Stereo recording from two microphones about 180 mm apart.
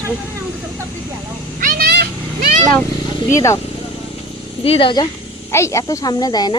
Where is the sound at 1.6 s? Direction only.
55° right (ahead or behind).